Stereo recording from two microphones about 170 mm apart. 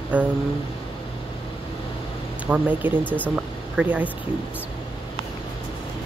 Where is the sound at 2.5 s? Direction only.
10° right (ahead or behind).